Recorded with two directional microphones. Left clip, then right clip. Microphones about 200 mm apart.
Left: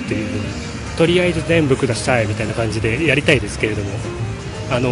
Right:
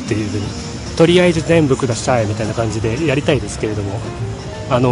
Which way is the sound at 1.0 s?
20° right (ahead or behind).